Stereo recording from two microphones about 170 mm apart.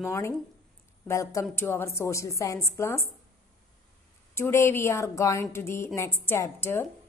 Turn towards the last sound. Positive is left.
turn(degrees=15)  # may be behind; listen again after turning